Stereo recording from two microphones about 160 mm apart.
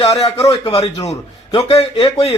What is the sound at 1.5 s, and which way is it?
Speech, 35° left (ahead or behind).